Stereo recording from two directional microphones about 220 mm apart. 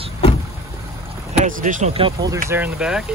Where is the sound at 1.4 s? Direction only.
35° right (ahead or behind).